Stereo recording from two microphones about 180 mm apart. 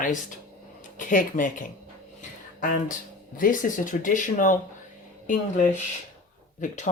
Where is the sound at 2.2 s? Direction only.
50° left (ahead or behind).